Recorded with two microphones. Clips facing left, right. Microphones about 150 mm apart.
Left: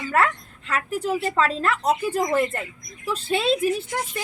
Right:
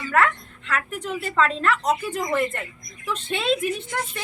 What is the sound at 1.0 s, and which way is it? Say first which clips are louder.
A woman's voice: left 1 dB; 35° left (ahead or behind).